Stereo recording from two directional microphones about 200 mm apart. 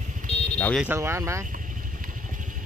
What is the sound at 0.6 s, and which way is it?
Vehicle, 5° left (ahead or behind).